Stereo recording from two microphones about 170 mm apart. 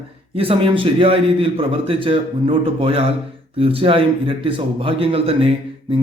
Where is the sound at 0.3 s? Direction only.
35° right (ahead or behind).